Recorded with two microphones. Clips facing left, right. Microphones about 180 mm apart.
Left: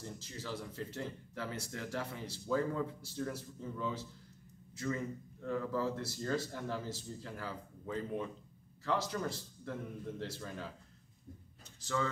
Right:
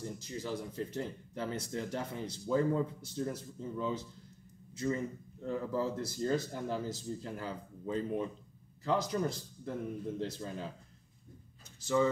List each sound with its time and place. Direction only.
0.0 s speech: 15° right (ahead or behind)
5.4 s a man's voice: 20° right (ahead or behind)
11.8 s speech: 10° right (ahead or behind)